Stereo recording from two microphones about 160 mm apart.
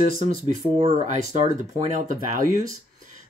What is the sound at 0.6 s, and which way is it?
Speech, 40° right (ahead or behind).